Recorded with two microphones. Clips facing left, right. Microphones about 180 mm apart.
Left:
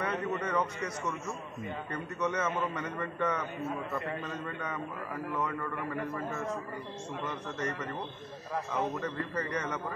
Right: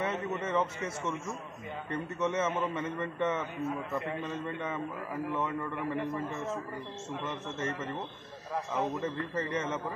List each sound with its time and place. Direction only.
0.0 s a man's voice: 25° right (ahead or behind)
2.1 s a man's voice: 25° right (ahead or behind)
9.0 s a man's voice: 25° right (ahead or behind)